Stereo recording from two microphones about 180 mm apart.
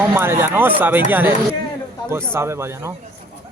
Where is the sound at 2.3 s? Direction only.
15° right (ahead or behind).